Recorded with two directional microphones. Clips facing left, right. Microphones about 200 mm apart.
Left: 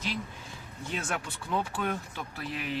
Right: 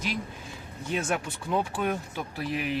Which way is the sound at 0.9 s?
15° right (ahead or behind).